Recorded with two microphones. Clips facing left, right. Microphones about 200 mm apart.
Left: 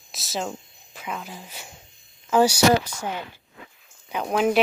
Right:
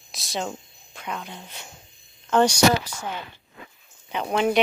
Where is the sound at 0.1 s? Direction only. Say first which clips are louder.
Even; centre (ahead or behind).